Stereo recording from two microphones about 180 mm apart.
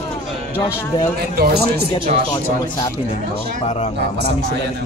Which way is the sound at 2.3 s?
20° left (ahead or behind).